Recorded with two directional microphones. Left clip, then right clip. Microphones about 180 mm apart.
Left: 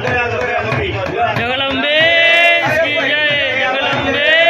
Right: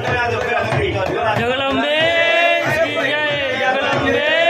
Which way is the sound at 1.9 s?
15° right (ahead or behind).